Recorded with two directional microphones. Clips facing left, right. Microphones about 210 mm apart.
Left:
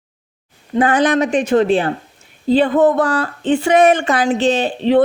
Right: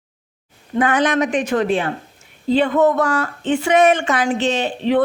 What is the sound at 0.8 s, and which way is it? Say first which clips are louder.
Speech: left 3 dB; 30° left (ahead or behind).